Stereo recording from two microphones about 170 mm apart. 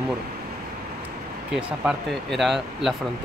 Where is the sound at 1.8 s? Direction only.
5° right (ahead or behind).